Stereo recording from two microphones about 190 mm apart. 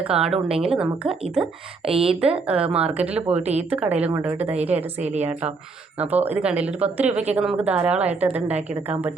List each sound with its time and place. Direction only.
0.0 s speech: 5° right (ahead or behind)
0.3 s a woman's voice: 30° right (ahead or behind)
0.6 s speech: 5° right (ahead or behind)
1.8 s speech: 30° right (ahead or behind)
2.5 s speech: 5° right (ahead or behind)
3.4 s a woman's voice: 35° right (ahead or behind)
3.7 s speech: 10° right (ahead or behind)
4.9 s a woman's voice: 35° right (ahead or behind)
6.0 s speech: 10° right (ahead or behind)